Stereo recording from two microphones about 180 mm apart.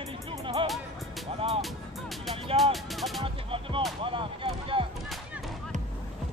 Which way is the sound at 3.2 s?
30° right (ahead or behind).